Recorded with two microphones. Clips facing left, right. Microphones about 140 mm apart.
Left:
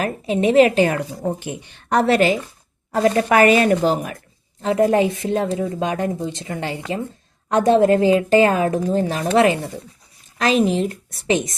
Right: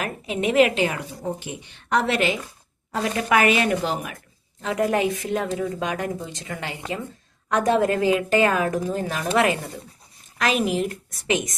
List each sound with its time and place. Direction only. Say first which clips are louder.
0.0 s a woman's voice: left 6 dB; 30° left (ahead or behind)
0.8 s a woman's voice: left 7 dB; 45° left (ahead or behind); by 11.5 s 30° left (ahead or behind)